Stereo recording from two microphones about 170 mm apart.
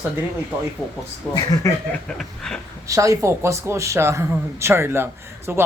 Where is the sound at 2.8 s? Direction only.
20° right (ahead or behind).